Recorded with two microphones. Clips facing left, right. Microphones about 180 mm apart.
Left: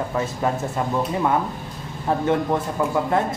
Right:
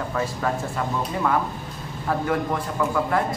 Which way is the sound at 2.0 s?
25° left (ahead or behind).